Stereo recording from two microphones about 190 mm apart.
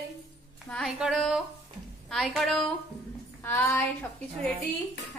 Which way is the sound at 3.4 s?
10° left (ahead or behind).